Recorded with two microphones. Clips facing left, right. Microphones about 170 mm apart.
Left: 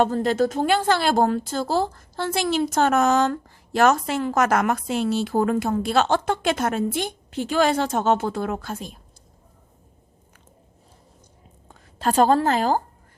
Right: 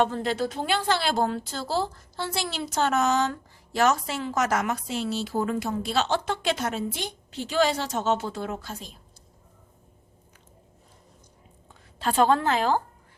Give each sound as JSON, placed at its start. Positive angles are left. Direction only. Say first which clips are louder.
{"t": 0.0, "sound": "a woman's voice", "louder": "left 5 dB", "side_deg": 40}
{"t": 11.7, "sound": "a woman's voice", "louder": "left 5 dB", "side_deg": 45}